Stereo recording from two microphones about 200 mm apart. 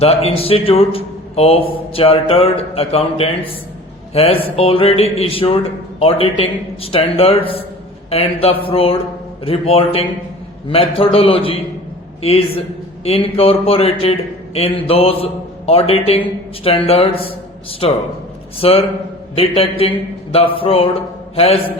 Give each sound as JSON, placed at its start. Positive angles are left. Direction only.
{"t": 0.0, "sound": "a man's voice", "side_deg": 30}